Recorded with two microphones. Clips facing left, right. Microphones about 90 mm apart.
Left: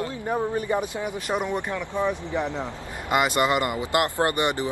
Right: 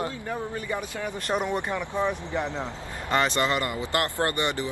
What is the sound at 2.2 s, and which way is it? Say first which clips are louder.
Speech: left 2 dB; 15° left (ahead or behind).